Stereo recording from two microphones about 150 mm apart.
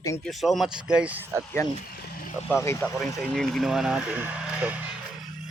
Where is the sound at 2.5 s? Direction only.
15° left (ahead or behind).